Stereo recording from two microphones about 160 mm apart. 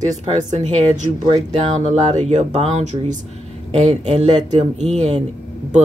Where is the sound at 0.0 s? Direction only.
45° right (ahead or behind).